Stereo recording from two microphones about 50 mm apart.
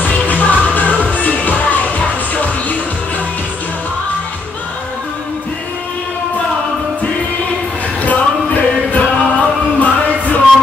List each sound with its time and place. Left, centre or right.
0.0 s music: left
8.0 s music: left